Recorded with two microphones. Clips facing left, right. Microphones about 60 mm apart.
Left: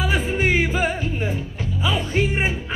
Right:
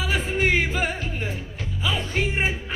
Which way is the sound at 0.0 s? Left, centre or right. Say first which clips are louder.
Left 2 dB; centre.